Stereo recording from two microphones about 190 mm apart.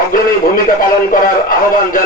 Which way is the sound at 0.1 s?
45° left (ahead or behind).